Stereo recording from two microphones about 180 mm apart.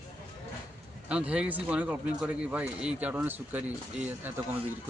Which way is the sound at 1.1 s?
5° right (ahead or behind).